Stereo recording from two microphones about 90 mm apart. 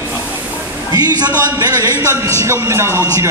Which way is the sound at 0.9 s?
50° right (ahead or behind).